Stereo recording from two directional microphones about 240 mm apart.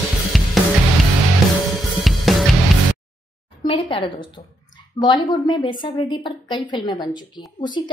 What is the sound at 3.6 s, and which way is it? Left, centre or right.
A woman's voice, left.